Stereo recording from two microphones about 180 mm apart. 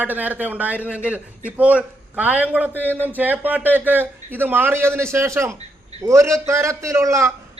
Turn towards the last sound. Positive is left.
turn(degrees=-15)  # may be behind; listen again after turning